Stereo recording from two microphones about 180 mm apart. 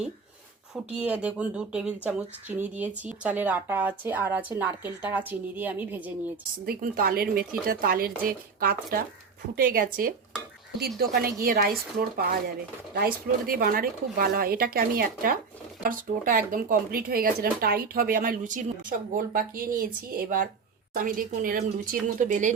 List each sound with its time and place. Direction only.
0.7 s speech: 5° right (ahead or behind)
6.7 s speech: 55° right (ahead or behind)